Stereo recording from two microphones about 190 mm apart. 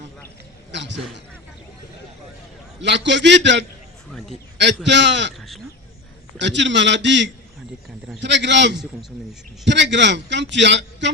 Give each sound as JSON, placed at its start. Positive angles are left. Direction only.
{"t": 0.7, "sound": "a sound", "side_deg": -70}
{"t": 2.8, "sound": "a man's voice", "side_deg": -70}
{"t": 5.4, "sound": "speech", "side_deg": 0}
{"t": 6.4, "sound": "a man's voice", "side_deg": -70}